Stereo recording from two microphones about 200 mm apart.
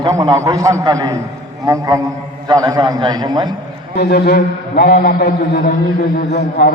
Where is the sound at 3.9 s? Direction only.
55° left (ahead or behind).